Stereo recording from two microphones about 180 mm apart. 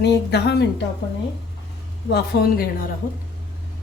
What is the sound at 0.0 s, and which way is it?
Speech, 65° left (ahead or behind).